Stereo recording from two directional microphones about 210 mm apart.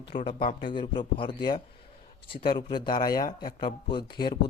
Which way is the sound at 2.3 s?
45° left (ahead or behind).